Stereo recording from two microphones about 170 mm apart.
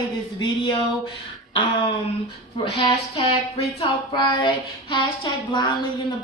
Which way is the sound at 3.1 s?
35° left (ahead or behind).